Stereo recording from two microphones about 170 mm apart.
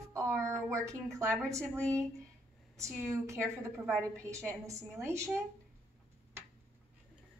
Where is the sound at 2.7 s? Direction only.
15° right (ahead or behind).